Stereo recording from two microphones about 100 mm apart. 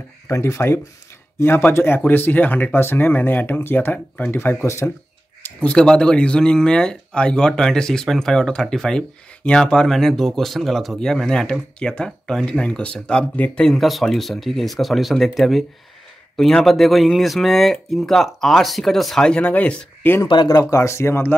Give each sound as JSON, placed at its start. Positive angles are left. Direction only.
{"t": 0.3, "sound": "speech", "side_deg": 30}
{"t": 5.4, "sound": "speech", "side_deg": 10}
{"t": 20.2, "sound": "speech", "side_deg": 45}